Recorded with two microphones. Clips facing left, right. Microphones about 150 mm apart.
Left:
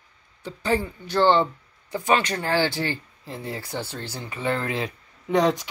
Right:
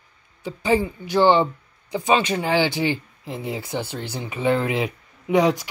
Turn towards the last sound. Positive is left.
turn(degrees=-5)  # may be behind; listen again after turning